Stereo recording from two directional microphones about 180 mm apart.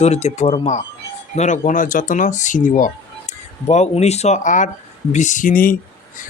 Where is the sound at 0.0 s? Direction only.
35° left (ahead or behind).